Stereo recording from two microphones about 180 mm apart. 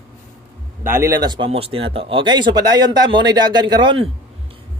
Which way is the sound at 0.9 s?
15° right (ahead or behind).